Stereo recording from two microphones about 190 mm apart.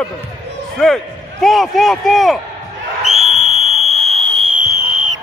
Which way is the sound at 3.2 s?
30° left (ahead or behind).